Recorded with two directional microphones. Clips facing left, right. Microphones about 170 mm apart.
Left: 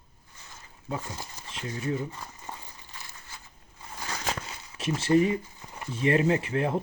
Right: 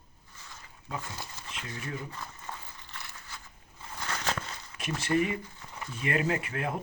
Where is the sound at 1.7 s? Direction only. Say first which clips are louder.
Left 8 dB; 25° left (ahead or behind).